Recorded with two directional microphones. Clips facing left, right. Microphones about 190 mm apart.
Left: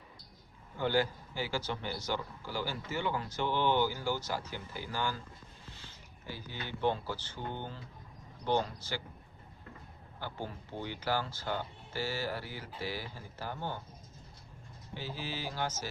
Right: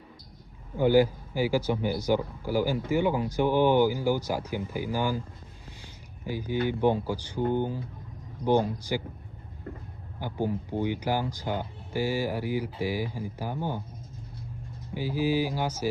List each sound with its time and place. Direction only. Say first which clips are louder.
0.8 s speech: right 10 dB; 10° right (ahead or behind)
5.8 s a sound: right 11 dB; 15° right (ahead or behind)
6.7 s speech: right 6 dB; 15° right (ahead or behind)
7.3 s speech: right 18 dB; 45° right (ahead or behind)
8.7 s speech: right 10 dB; 15° right (ahead or behind)
10.2 s speech: right 11 dB; 15° right (ahead or behind)
14.9 s speech: right 14 dB; 10° right (ahead or behind)